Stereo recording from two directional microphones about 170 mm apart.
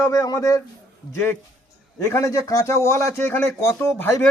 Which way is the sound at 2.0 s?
15° left (ahead or behind).